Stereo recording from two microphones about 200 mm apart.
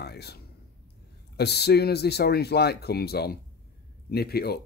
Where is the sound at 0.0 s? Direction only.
55° left (ahead or behind).